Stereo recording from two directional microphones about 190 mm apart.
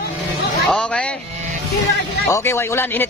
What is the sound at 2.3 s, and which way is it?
Speech, 15° left (ahead or behind).